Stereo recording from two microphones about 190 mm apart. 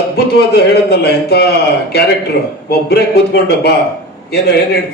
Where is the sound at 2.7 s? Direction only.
60° left (ahead or behind).